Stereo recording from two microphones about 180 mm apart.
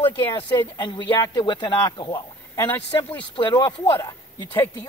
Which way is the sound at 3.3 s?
25° left (ahead or behind).